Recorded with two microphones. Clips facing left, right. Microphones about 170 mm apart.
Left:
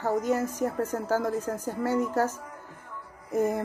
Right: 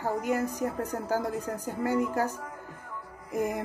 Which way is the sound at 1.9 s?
15° right (ahead or behind).